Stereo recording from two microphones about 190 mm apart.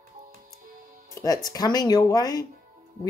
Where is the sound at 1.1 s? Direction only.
20° left (ahead or behind).